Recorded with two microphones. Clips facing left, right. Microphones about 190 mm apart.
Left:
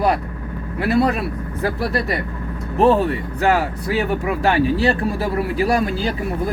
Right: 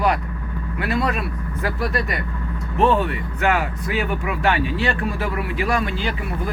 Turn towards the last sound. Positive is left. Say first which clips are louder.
# left 4 dB
turn(degrees=35)  # may be behind; listen again after turning